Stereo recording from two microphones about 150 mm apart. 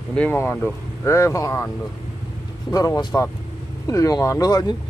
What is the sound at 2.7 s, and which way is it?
Speech, 25° left (ahead or behind).